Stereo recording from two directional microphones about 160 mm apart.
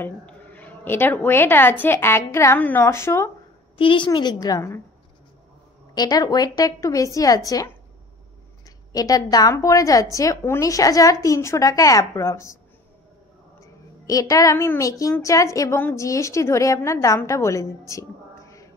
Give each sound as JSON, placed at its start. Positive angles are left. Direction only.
{"t": 0.0, "sound": "speech", "side_deg": 10}
{"t": 3.7, "sound": "a woman's voice", "side_deg": 30}
{"t": 5.9, "sound": "a woman's voice", "side_deg": 25}
{"t": 8.9, "sound": "a woman's voice", "side_deg": 20}
{"t": 13.6, "sound": "a woman's voice", "side_deg": 20}